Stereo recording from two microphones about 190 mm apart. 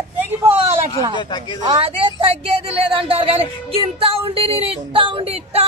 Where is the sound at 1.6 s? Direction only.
25° right (ahead or behind).